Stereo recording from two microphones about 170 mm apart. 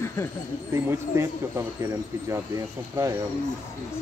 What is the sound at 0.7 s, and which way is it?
Speech, 15° right (ahead or behind).